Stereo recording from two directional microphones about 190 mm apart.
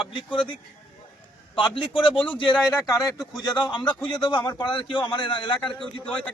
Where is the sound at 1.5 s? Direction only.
25° left (ahead or behind).